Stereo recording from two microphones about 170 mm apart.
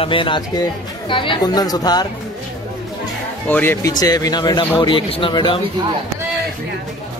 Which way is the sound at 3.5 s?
10° left (ahead or behind).